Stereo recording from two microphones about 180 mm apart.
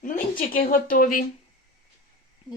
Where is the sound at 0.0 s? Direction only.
50° left (ahead or behind).